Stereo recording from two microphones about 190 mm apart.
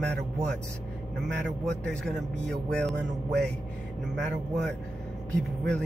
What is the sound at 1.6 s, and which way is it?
A man's voice, 5° left (ahead or behind).